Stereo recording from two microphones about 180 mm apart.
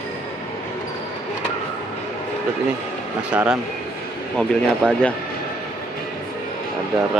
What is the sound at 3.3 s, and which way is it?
Speech, 5° right (ahead or behind).